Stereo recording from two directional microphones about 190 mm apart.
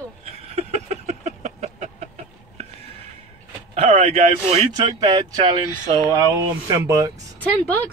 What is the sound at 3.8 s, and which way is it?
Speech, 35° right (ahead or behind).